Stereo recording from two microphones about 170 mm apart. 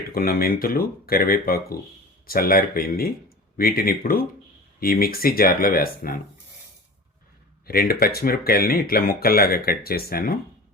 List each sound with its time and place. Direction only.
0.1 s speech: 60° left (ahead or behind)
7.7 s speech: 60° left (ahead or behind)